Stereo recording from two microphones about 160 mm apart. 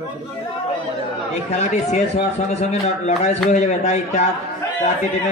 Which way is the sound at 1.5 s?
45° left (ahead or behind).